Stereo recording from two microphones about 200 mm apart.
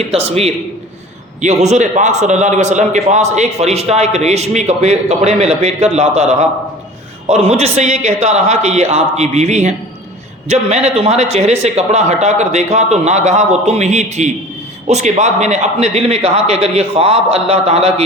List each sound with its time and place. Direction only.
0.1 s a man's voice: 30° right (ahead or behind)